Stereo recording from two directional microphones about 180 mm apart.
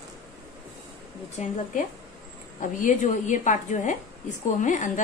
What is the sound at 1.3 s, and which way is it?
Speech, 40° left (ahead or behind).